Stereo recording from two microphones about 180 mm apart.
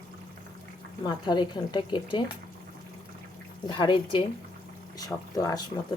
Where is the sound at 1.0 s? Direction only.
25° left (ahead or behind).